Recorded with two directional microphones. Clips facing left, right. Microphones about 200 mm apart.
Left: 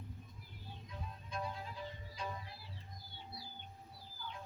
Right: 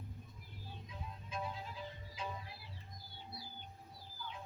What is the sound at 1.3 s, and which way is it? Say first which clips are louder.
Music: even; 5° right (ahead or behind).